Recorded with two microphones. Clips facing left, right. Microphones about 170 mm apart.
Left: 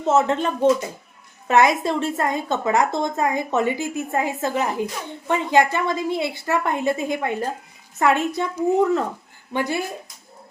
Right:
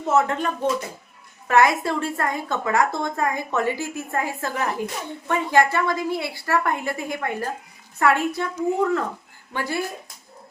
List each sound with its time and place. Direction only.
0.0 s a woman's voice: 25° left (ahead or behind)